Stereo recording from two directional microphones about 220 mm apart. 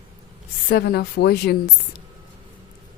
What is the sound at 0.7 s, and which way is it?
Speech, 45° left (ahead or behind).